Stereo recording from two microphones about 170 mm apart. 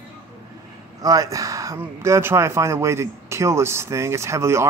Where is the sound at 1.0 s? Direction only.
20° right (ahead or behind).